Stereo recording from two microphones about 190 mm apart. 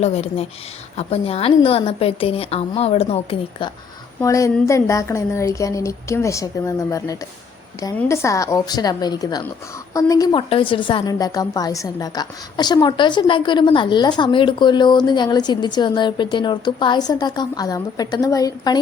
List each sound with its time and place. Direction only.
0.0 s a woman's voice: 30° left (ahead or behind)
4.2 s a woman's voice: 15° left (ahead or behind)